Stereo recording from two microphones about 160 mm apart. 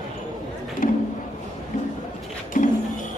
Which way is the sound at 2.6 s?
55° left (ahead or behind).